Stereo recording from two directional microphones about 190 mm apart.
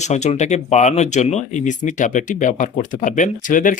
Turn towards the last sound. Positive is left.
turn(degrees=45)  # may be behind; listen again after turning